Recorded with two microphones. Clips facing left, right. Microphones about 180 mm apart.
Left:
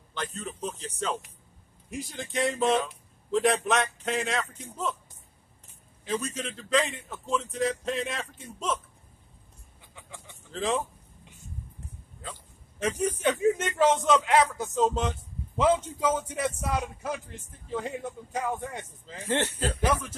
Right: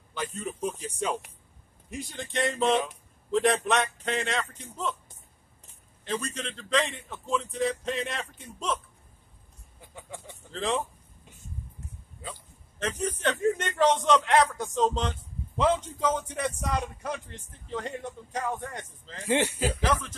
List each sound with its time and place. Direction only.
0.1 s speech: 10° right (ahead or behind)
1.9 s a man's voice: centre (ahead or behind)
6.0 s a man's voice: 5° left (ahead or behind)
10.5 s speech: centre (ahead or behind)
12.7 s a man's voice: 10° left (ahead or behind)
19.2 s speech: 10° right (ahead or behind)
19.8 s a man's voice: 10° left (ahead or behind)